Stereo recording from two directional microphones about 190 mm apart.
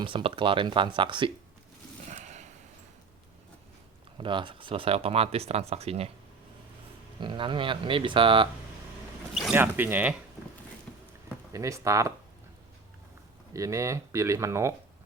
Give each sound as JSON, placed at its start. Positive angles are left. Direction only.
{"t": 0.0, "sound": "speech", "side_deg": -25}
{"t": 2.0, "sound": "a sound", "side_deg": -40}
{"t": 4.2, "sound": "speech", "side_deg": -25}
{"t": 7.2, "sound": "speech", "side_deg": -25}
{"t": 9.3, "sound": "speech", "side_deg": -5}
{"t": 10.9, "sound": "a sound", "side_deg": 10}
{"t": 11.5, "sound": "speech", "side_deg": -15}
{"t": 13.5, "sound": "speech", "side_deg": -15}